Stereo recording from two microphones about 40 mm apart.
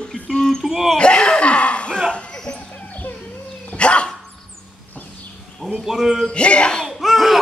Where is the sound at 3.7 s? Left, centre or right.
Left.